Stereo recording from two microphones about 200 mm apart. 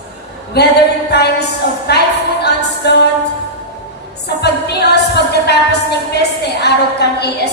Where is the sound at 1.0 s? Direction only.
55° left (ahead or behind).